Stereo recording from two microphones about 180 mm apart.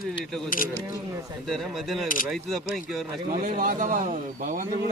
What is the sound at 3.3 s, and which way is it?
A man's voice, 50° right (ahead or behind).